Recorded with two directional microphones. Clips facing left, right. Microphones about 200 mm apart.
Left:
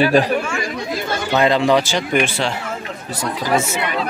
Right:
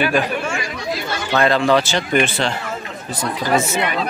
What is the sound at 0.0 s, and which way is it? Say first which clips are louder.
Speech: left 4 dB; 35° left (ahead or behind).